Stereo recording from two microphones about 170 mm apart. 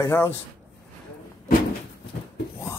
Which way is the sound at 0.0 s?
15° left (ahead or behind).